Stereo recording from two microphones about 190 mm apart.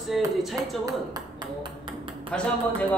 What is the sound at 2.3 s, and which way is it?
Speech, 5° left (ahead or behind).